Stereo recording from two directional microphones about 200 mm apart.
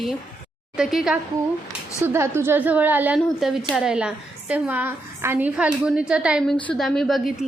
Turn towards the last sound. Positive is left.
turn(degrees=0)  # may be behind; listen again after turning